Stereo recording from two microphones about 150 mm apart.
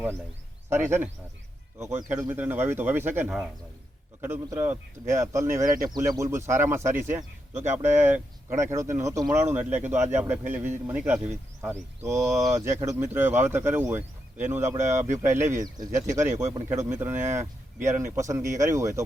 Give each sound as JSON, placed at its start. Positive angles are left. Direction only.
{"t": 0.7, "sound": "speech", "side_deg": -15}
{"t": 12.3, "sound": "speech", "side_deg": -20}